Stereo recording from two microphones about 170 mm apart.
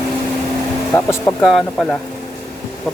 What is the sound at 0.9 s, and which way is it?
Speech, 15° left (ahead or behind).